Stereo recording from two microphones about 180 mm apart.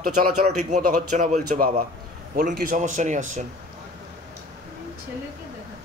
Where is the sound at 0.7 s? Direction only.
40° right (ahead or behind).